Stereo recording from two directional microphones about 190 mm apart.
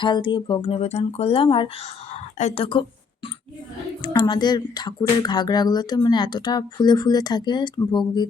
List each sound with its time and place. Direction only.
0.0 s speech: 25° left (ahead or behind)
4.0 s speech: 25° left (ahead or behind)